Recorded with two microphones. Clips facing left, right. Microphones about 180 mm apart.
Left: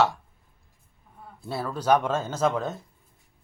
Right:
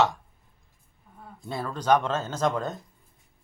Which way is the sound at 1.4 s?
5° left (ahead or behind).